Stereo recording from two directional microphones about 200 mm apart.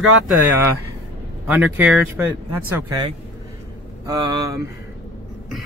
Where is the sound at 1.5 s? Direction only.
5° right (ahead or behind).